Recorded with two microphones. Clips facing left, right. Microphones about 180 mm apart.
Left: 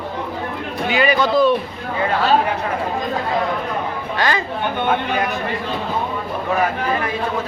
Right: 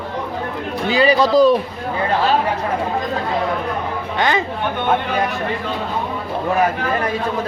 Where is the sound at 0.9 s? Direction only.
35° right (ahead or behind).